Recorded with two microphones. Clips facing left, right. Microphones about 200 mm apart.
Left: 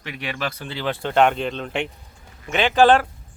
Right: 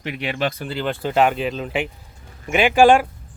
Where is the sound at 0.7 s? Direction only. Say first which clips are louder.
Right 2 dB; centre (ahead or behind).